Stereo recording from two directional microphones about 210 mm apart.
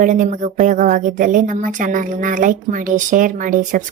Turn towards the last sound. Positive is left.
turn(degrees=-40)  # may be behind; listen again after turning